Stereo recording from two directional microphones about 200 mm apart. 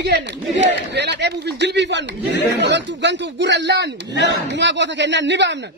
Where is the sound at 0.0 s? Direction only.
60° right (ahead or behind).